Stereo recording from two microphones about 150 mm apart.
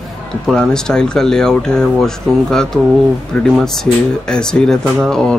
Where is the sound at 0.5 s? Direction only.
5° left (ahead or behind).